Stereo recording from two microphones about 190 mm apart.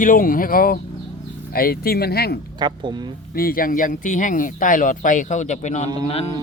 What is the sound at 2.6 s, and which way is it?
Speech, 25° right (ahead or behind).